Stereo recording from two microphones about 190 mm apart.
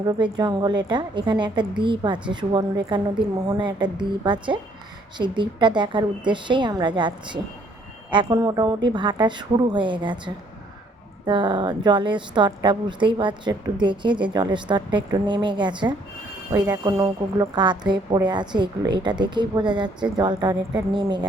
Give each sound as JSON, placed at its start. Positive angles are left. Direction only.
{"t": 0.0, "sound": "a woman's voice", "side_deg": -20}